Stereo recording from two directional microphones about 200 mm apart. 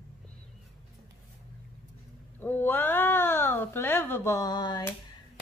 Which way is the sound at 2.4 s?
10° left (ahead or behind).